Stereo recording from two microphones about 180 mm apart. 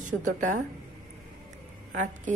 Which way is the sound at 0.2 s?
45° right (ahead or behind).